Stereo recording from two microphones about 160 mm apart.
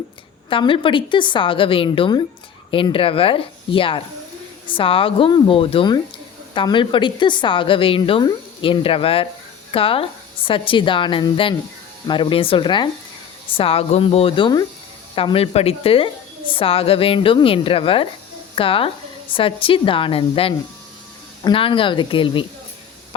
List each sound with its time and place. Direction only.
0.5 s a woman's voice: 30° left (ahead or behind)